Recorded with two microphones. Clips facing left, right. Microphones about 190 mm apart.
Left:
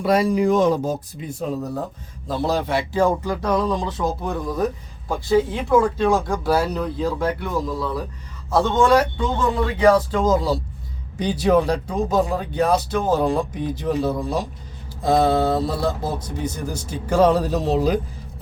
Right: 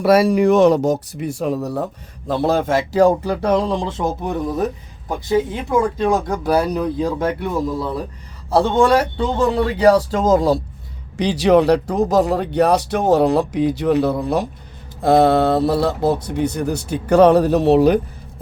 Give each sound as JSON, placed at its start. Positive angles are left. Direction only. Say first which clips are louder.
{"t": 0.0, "sound": "speech", "louder": "right 5 dB", "side_deg": -75}
{"t": 2.2, "sound": "a man's voice", "louder": "right 5 dB", "side_deg": -55}
{"t": 11.2, "sound": "speech", "louder": "right 4 dB", "side_deg": -80}